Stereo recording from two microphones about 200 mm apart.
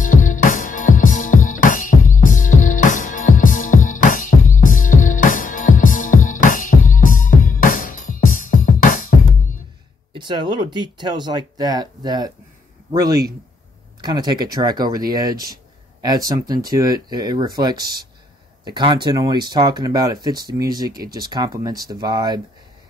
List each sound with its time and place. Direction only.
0.0 s music: 40° left (ahead or behind)
10.1 s speech: 25° right (ahead or behind)